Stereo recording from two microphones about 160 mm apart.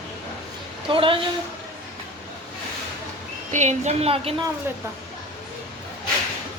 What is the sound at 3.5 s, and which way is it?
Speech, 45° right (ahead or behind).